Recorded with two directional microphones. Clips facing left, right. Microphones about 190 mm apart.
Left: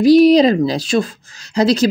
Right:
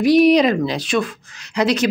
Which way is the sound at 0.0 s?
30° left (ahead or behind).